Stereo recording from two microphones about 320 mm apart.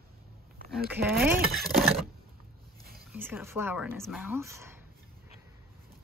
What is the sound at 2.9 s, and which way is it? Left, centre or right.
Speech, centre.